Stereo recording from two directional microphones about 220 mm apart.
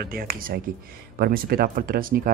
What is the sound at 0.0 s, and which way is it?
Speech, 45° right (ahead or behind).